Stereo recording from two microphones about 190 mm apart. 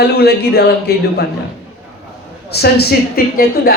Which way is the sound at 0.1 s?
55° left (ahead or behind).